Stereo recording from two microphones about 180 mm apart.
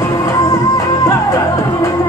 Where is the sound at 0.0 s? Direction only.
15° left (ahead or behind).